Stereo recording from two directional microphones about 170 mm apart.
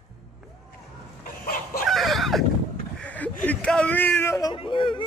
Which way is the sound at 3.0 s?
10° left (ahead or behind).